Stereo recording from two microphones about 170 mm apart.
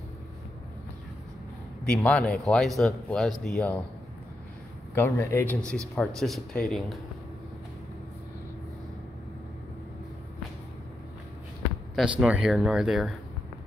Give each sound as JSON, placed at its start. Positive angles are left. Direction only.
{"t": 2.0, "sound": "speech", "side_deg": 5}
{"t": 4.9, "sound": "speech", "side_deg": 15}
{"t": 5.9, "sound": "speech", "side_deg": 0}
{"t": 11.9, "sound": "speech", "side_deg": -5}